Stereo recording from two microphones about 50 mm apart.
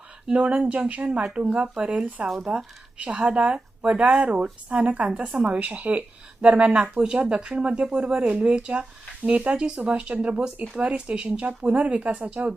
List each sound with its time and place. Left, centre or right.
0.3 s speech: right
6.7 s speech: right
6.9 s speech: centre